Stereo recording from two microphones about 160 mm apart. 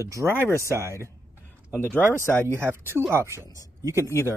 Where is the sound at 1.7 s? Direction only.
15° right (ahead or behind).